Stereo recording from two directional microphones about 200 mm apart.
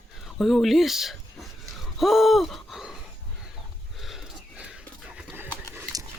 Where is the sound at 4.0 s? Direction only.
Centre (ahead or behind).